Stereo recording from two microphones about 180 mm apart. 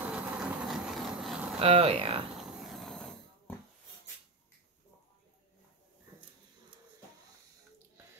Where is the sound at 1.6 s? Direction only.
35° right (ahead or behind).